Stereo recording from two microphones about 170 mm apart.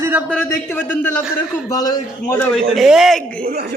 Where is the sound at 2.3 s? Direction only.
10° left (ahead or behind).